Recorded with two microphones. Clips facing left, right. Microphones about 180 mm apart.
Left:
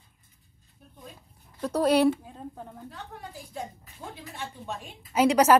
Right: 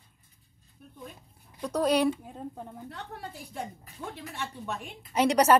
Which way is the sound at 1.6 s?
10° left (ahead or behind).